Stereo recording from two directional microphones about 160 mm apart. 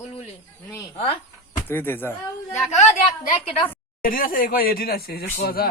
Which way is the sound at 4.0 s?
60° left (ahead or behind).